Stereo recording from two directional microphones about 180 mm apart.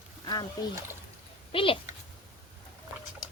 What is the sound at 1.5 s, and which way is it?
Speech, 30° left (ahead or behind).